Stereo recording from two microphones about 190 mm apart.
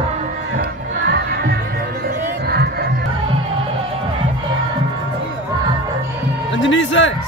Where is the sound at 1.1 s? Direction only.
55° right (ahead or behind).